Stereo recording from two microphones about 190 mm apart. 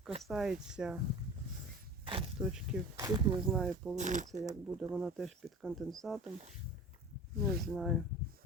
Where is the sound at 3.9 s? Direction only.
40° right (ahead or behind).